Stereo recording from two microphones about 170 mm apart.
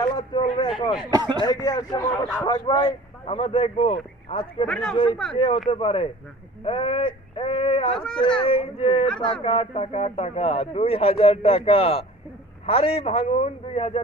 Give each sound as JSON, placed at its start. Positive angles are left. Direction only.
{"t": 0.0, "sound": "speech", "side_deg": 25}
{"t": 1.1, "sound": "speech", "side_deg": -25}
{"t": 1.4, "sound": "speech", "side_deg": 25}
{"t": 4.6, "sound": "speech", "side_deg": 5}
{"t": 5.3, "sound": "a man's voice", "side_deg": 30}